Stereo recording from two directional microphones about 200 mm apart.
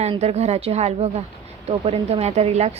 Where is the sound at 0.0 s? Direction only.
30° right (ahead or behind).